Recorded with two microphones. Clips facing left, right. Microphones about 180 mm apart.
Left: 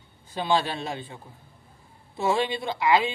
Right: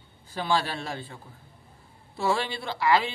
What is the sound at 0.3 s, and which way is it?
A man's voice, 20° left (ahead or behind).